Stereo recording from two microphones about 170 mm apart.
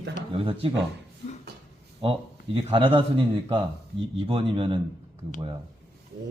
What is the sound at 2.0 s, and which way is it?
A man's voice, 30° right (ahead or behind).